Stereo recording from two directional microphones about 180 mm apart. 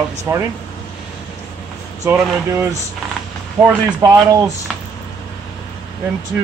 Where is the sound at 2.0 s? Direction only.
15° right (ahead or behind).